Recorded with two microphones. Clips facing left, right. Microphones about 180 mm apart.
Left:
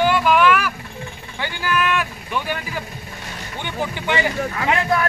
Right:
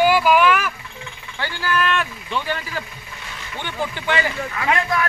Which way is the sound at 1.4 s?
15° left (ahead or behind).